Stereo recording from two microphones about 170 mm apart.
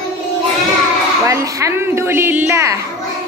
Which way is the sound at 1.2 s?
20° right (ahead or behind).